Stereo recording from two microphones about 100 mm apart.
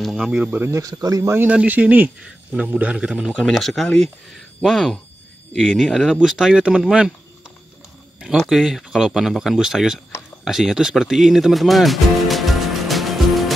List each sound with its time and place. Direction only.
0.0 s speech: 5° right (ahead or behind)
0.7 s speech: 30° right (ahead or behind)
1.4 s speech: 15° right (ahead or behind)
8.4 s speech: 5° right (ahead or behind)
10.4 s music: 5° right (ahead or behind)